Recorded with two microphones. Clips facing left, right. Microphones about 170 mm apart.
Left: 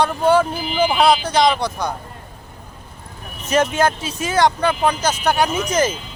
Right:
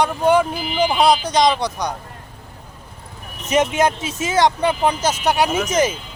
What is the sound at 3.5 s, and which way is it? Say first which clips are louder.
Speech: even; 20° right (ahead or behind).